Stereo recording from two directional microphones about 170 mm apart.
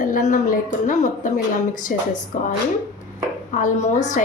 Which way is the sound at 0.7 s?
45° left (ahead or behind).